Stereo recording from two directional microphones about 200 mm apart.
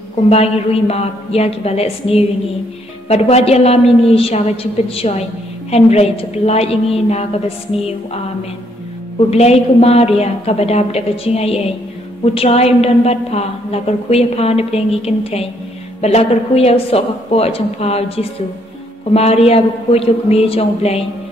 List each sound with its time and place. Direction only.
0.3 s a woman's voice: 30° left (ahead or behind)
9.3 s a woman's voice: 30° left (ahead or behind)